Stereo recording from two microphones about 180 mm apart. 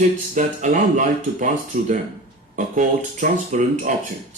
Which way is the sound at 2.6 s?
45° right (ahead or behind).